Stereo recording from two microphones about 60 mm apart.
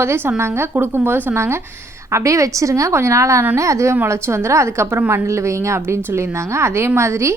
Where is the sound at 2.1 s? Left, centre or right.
Right.